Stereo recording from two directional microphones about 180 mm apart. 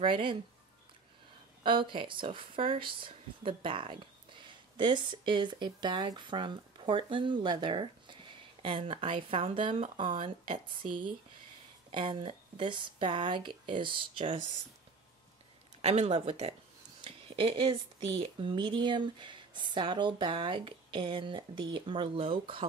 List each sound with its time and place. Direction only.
0.0 s speech: 30° right (ahead or behind)
1.6 s speech: 25° right (ahead or behind)
15.8 s speech: 35° right (ahead or behind)